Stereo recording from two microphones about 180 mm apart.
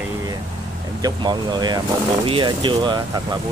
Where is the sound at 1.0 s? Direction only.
25° right (ahead or behind).